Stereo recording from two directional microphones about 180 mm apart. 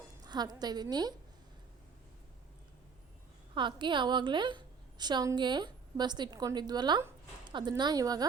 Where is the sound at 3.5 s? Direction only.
25° right (ahead or behind).